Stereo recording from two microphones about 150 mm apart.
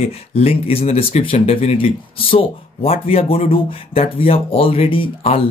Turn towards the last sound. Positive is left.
turn(degrees=35)  # may be behind; listen again after turning